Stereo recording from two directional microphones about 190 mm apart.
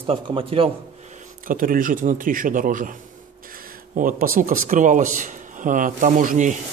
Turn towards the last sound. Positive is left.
turn(degrees=-45)  # may be behind; listen again after turning